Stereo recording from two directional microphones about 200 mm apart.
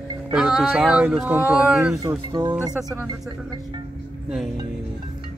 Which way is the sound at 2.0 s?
20° right (ahead or behind).